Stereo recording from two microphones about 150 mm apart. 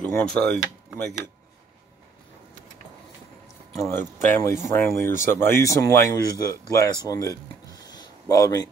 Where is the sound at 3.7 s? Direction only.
20° left (ahead or behind).